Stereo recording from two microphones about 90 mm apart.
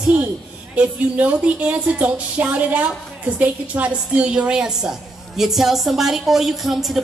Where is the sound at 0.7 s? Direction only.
15° right (ahead or behind).